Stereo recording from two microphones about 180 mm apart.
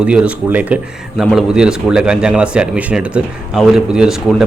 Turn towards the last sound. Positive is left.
turn(degrees=-5)  # may be behind; listen again after turning